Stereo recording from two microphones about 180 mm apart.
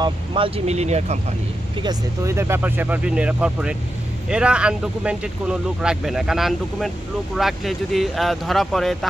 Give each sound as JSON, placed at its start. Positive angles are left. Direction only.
{"t": 0.0, "sound": "speech", "side_deg": -30}
{"t": 1.8, "sound": "speech", "side_deg": -20}